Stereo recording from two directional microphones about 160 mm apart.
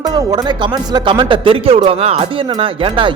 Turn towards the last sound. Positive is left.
turn(degrees=-30)  # may be behind; listen again after turning